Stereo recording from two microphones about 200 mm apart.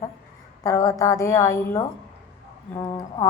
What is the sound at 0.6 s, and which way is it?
Speech, 15° left (ahead or behind).